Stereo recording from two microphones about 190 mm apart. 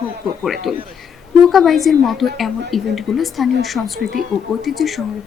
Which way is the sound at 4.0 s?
50° right (ahead or behind).